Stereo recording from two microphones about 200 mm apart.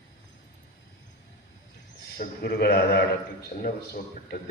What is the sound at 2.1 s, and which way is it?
A man's voice, 50° left (ahead or behind).